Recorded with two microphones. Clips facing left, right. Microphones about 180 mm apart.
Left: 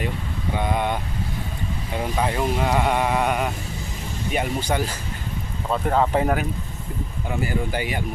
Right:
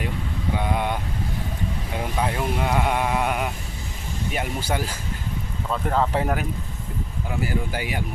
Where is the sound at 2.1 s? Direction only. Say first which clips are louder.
Left 2 dB; centre (ahead or behind).